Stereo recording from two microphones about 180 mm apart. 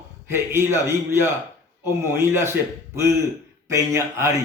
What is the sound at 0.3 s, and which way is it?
Speech, 15° right (ahead or behind).